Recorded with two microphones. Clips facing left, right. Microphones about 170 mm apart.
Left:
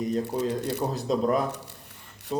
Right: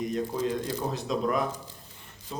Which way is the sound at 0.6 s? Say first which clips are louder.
Left 4 dB; 70° left (ahead or behind).